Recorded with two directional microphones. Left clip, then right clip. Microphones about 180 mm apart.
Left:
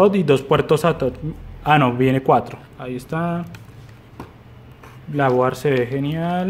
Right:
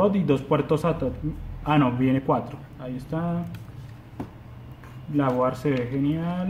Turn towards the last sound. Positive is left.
turn(degrees=45)  # may be behind; listen again after turning